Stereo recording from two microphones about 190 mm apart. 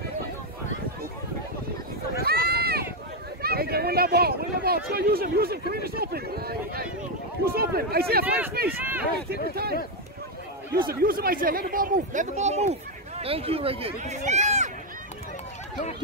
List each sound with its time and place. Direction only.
2.2 s run: 55° right (ahead or behind)
3.4 s speech: 55° right (ahead or behind)
8.6 s speech: 10° right (ahead or behind)
9.3 s speech: 55° right (ahead or behind)
10.9 s speech: 50° right (ahead or behind)